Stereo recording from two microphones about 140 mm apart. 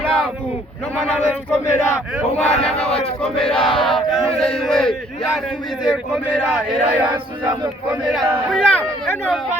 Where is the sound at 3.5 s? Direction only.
40° left (ahead or behind).